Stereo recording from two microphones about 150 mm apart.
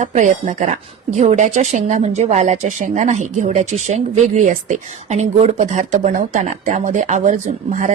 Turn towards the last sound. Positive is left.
turn(degrees=-55)  # may be behind; listen again after turning